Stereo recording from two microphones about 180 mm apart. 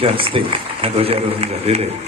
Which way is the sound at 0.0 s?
30° right (ahead or behind).